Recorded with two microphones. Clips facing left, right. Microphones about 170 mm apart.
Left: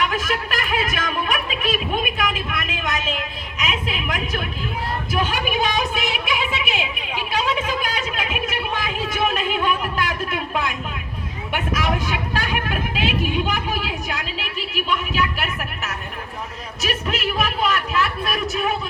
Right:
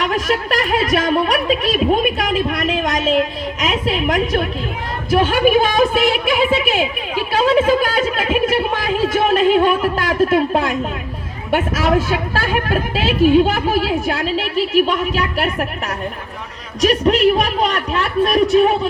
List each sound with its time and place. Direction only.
0.0 s a woman's voice: 35° right (ahead or behind)
7.3 s a sound: 45° right (ahead or behind)
12.0 s speech: 45° right (ahead or behind)
16.8 s speech: 35° right (ahead or behind)